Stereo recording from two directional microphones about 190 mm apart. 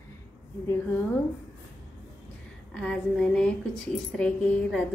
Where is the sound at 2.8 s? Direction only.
5° left (ahead or behind).